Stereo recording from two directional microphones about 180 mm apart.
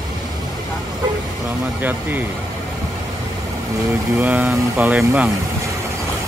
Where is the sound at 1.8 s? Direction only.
10° right (ahead or behind).